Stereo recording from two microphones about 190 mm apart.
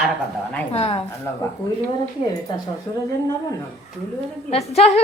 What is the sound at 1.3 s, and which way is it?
Speech, 15° left (ahead or behind).